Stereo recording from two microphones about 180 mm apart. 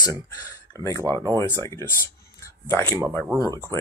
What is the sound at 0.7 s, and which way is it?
Speech, 15° left (ahead or behind).